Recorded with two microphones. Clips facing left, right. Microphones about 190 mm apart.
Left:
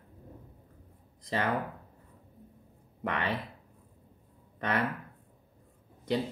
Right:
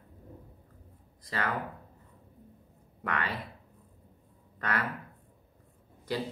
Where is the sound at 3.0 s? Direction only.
20° left (ahead or behind).